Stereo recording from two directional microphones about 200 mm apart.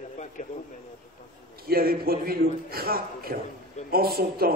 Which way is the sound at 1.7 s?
50° right (ahead or behind).